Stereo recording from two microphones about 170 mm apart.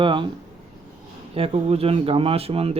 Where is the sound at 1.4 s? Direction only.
35° right (ahead or behind).